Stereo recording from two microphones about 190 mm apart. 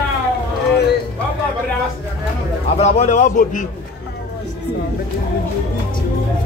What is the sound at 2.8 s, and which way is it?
Speech, 40° left (ahead or behind).